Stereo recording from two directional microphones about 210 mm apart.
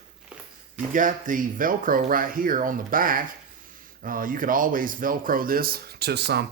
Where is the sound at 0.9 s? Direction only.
40° right (ahead or behind).